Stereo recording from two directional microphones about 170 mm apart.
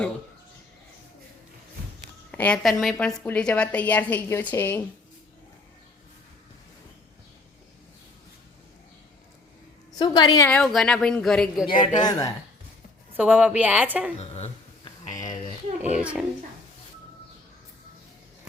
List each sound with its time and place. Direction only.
2.3 s a woman's voice: 10° left (ahead or behind)
10.0 s a woman's voice: 25° left (ahead or behind)
10.5 s a woman's voice: centre (ahead or behind)
11.7 s a woman's voice: 30° left (ahead or behind)
13.1 s a woman's voice: 10° right (ahead or behind)
14.2 s speech: 40° left (ahead or behind)
16.0 s a woman's voice: 5° right (ahead or behind)